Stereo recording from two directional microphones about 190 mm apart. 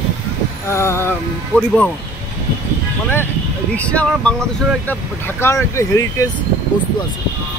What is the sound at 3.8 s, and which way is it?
Speech, 5° left (ahead or behind).